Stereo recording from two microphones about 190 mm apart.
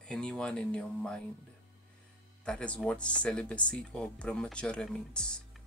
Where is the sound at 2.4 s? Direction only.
5° left (ahead or behind).